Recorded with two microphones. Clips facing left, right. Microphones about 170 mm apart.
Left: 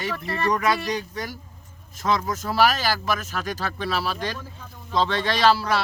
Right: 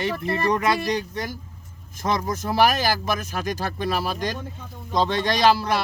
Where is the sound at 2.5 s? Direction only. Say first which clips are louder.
Right 1 dB; 15° right (ahead or behind).